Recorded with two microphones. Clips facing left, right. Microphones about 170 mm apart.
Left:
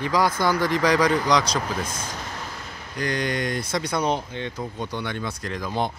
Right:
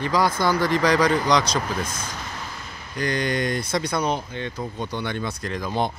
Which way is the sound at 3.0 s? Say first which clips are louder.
Right 2 dB; 5° left (ahead or behind).